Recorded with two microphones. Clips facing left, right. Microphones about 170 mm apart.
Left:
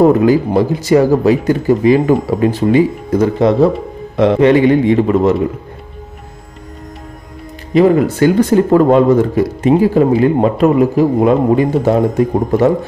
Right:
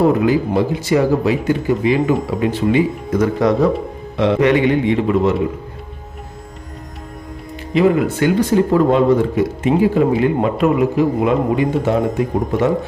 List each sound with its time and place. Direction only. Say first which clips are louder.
0.0 s speech: left 5 dB; 40° left (ahead or behind)
3.3 s speech: left 4 dB; 25° left (ahead or behind)
7.7 s speech: left 4 dB; 45° left (ahead or behind)